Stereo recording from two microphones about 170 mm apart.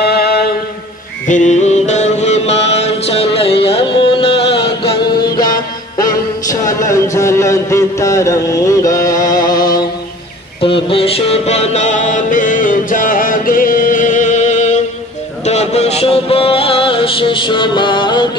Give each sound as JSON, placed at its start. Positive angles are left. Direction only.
{"t": 0.0, "sound": "mantra", "side_deg": 70}
{"t": 1.2, "sound": "music", "side_deg": 45}
{"t": 7.2, "sound": "a sound", "side_deg": 15}
{"t": 10.6, "sound": "music", "side_deg": 35}